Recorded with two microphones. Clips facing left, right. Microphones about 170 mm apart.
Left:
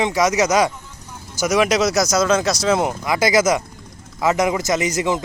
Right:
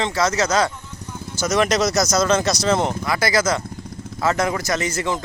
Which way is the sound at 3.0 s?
20° left (ahead or behind).